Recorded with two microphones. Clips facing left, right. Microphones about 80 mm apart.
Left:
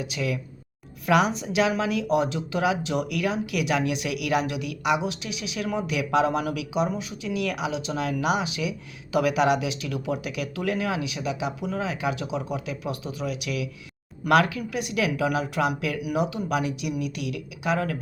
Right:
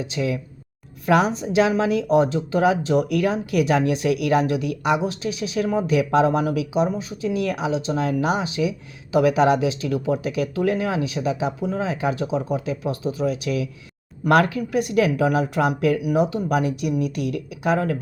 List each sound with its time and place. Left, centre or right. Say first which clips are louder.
0.0 s speech: right 4 dB; right